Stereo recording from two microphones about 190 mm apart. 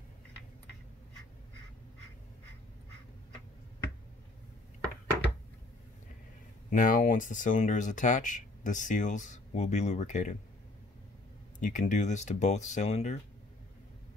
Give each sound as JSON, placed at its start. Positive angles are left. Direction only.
{"t": 6.7, "sound": "speech", "side_deg": 45}
{"t": 11.6, "sound": "speech", "side_deg": 40}